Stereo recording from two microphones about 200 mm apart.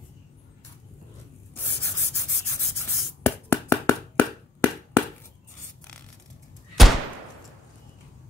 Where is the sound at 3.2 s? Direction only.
15° left (ahead or behind).